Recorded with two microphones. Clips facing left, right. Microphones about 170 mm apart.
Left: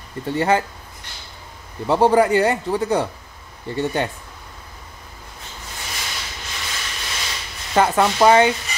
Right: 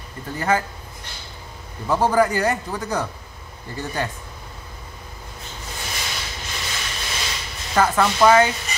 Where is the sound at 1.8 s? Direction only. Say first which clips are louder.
Left 3 dB; 25° left (ahead or behind).